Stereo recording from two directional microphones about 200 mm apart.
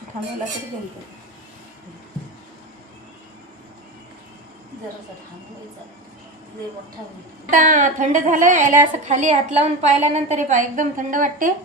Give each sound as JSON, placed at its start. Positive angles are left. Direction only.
{"t": 7.5, "sound": "a woman's voice", "side_deg": -40}